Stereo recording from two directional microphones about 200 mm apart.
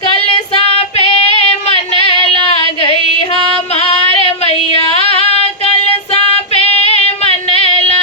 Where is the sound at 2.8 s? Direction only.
30° left (ahead or behind).